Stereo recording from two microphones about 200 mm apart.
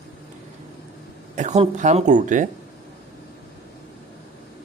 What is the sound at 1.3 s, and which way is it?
Speech, 35° right (ahead or behind).